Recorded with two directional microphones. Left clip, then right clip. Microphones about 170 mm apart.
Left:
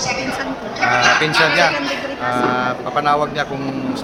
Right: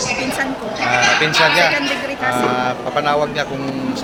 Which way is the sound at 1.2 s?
10° left (ahead or behind).